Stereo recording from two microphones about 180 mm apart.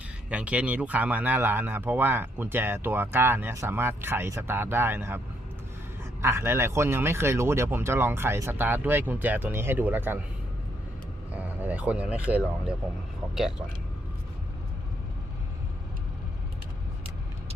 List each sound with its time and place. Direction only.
0.3 s speech: 5° right (ahead or behind)
6.2 s speech: 15° right (ahead or behind)
11.3 s a sound: 10° right (ahead or behind)